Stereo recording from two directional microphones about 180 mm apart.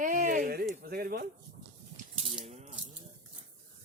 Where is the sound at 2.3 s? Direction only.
40° right (ahead or behind).